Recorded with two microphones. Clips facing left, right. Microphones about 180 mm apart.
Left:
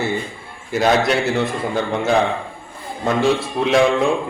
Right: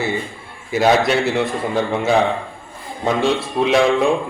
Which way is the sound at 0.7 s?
Centre (ahead or behind).